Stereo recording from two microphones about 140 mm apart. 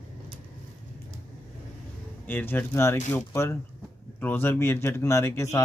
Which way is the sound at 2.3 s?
15° left (ahead or behind).